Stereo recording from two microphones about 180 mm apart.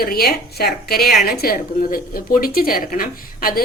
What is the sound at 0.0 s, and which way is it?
A woman's voice, 60° left (ahead or behind).